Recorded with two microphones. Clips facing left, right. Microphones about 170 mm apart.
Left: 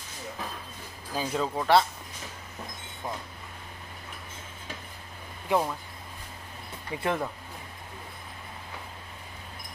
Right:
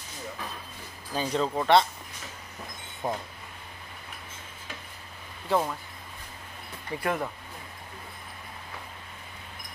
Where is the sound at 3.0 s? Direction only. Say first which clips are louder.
Right 5 dB; 25° right (ahead or behind).